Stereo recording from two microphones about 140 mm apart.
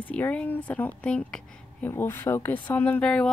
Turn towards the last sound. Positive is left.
turn(degrees=10)  # may be behind; listen again after turning